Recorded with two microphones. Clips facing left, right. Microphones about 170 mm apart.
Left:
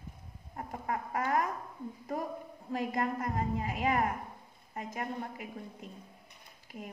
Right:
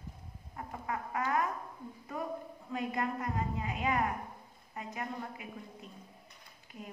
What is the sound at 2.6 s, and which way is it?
A woman's voice, 40° left (ahead or behind).